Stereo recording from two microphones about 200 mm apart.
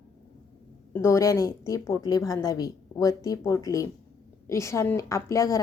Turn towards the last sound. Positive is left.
turn(degrees=15)  # may be behind; listen again after turning